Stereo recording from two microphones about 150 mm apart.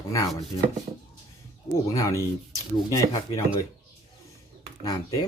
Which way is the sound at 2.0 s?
20° left (ahead or behind).